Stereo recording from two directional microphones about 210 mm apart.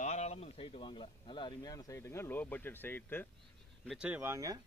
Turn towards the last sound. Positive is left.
turn(degrees=-15)  # may be behind; listen again after turning